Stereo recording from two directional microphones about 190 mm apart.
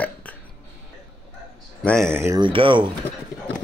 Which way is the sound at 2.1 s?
15° right (ahead or behind).